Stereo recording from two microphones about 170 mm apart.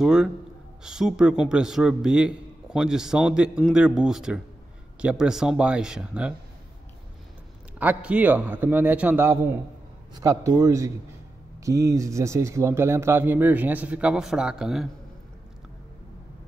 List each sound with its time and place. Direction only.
0.0 s a man's voice: 5° right (ahead or behind)
7.8 s speech: 10° right (ahead or behind)